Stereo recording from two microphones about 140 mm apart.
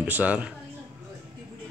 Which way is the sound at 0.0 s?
10° right (ahead or behind).